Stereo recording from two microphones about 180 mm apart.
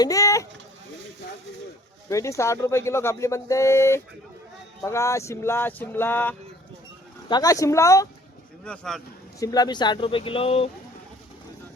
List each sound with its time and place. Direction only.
0.0 s speech: 20° left (ahead or behind)
2.0 s speech: 15° left (ahead or behind)
7.3 s speech: 20° left (ahead or behind)
8.6 s speech: 5° left (ahead or behind)
9.4 s speech: 20° left (ahead or behind)